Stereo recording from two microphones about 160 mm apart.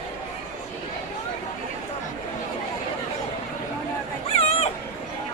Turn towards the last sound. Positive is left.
turn(degrees=40)  # may be behind; listen again after turning